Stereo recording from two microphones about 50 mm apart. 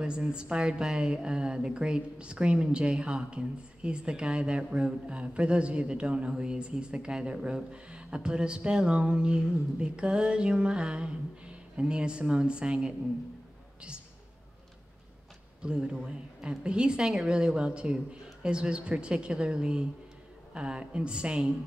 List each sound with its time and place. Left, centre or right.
0.0 s a woman's voice: centre
10.3 s a sound: centre
11.8 s a woman's voice: centre
15.6 s a woman's voice: centre
17.0 s a woman's voice: centre